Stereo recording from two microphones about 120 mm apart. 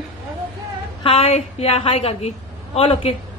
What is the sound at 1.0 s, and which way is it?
A woman's voice, 55° left (ahead or behind).